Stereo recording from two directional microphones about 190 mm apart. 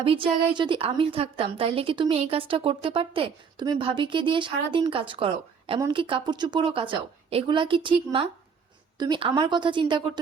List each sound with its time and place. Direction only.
0.0 s a woman's voice: 30° right (ahead or behind)